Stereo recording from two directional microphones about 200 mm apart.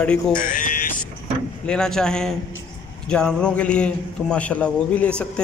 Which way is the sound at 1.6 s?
5° left (ahead or behind).